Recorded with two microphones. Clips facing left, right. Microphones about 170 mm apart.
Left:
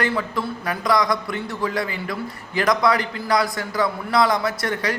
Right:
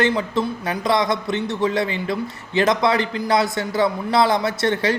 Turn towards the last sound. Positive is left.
turn(degrees=-25)  # may be behind; listen again after turning